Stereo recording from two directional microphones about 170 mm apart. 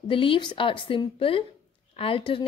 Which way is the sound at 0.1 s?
30° left (ahead or behind).